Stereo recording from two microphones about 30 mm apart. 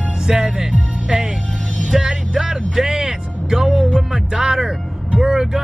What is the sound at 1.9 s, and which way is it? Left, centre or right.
Music, right.